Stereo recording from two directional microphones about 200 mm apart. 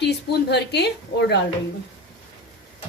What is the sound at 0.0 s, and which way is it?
Speech, 55° left (ahead or behind).